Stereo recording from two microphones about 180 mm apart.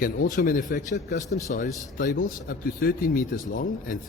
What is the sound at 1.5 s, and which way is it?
Speech, 60° left (ahead or behind).